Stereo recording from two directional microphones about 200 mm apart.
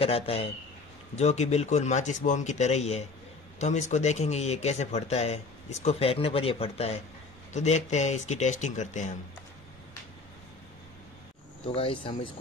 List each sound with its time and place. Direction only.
0.0 s speech: 30° left (ahead or behind)
11.6 s speech: 25° left (ahead or behind)